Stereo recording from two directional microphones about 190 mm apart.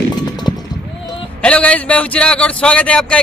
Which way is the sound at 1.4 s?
5° left (ahead or behind).